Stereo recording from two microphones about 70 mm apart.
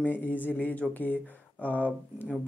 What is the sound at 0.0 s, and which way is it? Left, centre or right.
Speech, left.